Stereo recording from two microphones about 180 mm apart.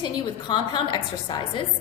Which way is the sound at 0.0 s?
25° left (ahead or behind).